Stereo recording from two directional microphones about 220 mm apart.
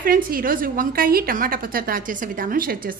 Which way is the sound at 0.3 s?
40° right (ahead or behind).